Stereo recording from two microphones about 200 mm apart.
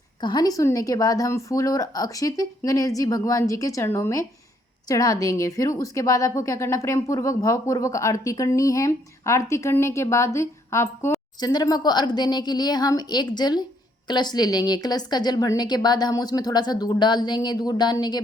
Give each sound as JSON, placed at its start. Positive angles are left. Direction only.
{"t": 0.2, "sound": "a woman's voice", "side_deg": 20}